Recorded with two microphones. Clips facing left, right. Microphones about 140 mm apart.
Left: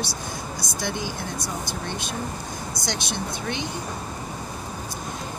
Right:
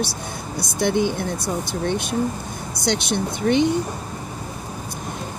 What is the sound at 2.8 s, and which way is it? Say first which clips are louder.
Speech: right 9 dB; 60° right (ahead or behind).